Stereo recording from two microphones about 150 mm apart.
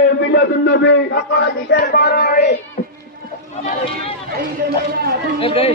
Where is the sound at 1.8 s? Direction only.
90° left.